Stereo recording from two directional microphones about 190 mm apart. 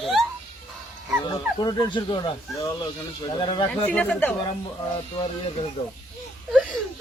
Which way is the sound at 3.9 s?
5° left (ahead or behind).